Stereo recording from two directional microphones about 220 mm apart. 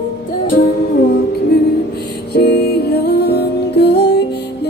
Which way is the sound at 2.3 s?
45° left (ahead or behind).